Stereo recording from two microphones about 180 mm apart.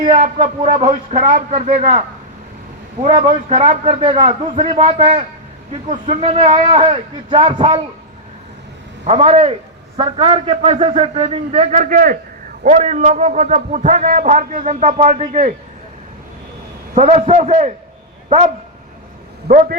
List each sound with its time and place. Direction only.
0.2 s a man's voice: 40° right (ahead or behind)
3.1 s a man's voice: 20° right (ahead or behind)
3.5 s a man's voice: 35° right (ahead or behind)
9.0 s a man's voice: 40° right (ahead or behind)
12.6 s a man's voice: 40° right (ahead or behind)
16.9 s a man's voice: 35° right (ahead or behind)
19.5 s speech: 50° right (ahead or behind)